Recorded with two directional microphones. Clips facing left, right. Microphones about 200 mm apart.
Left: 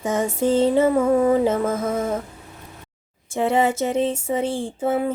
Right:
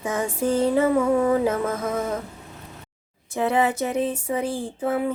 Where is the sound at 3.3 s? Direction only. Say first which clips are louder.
Left 2 dB; 25° left (ahead or behind).